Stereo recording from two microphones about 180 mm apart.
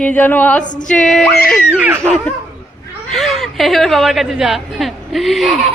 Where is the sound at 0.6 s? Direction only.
45° left (ahead or behind).